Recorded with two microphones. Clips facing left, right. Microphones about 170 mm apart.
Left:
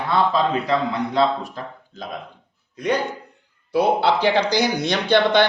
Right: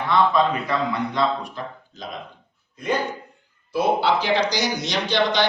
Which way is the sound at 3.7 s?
65° left (ahead or behind).